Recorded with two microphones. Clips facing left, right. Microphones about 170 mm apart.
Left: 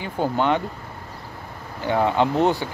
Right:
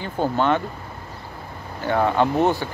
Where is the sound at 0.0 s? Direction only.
15° left (ahead or behind).